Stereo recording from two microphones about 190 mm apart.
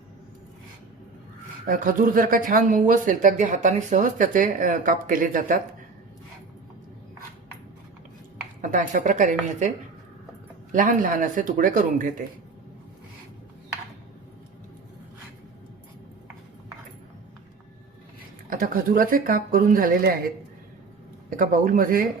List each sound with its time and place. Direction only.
1.6 s speech: 45° right (ahead or behind)
8.6 s speech: 45° right (ahead or behind)
10.7 s speech: 45° right (ahead or behind)
18.5 s speech: 50° right (ahead or behind)
21.2 s speech: 45° right (ahead or behind)